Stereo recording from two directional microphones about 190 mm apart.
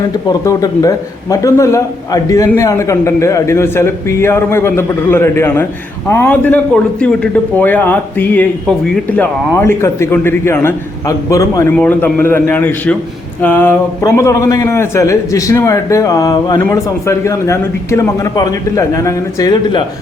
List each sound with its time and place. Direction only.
0.4 s a man's voice: 15° left (ahead or behind)